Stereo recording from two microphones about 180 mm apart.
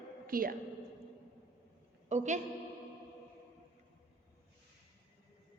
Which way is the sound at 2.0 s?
40° right (ahead or behind).